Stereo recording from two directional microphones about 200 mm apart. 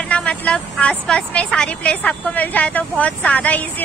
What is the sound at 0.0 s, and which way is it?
A woman's voice, 5° left (ahead or behind).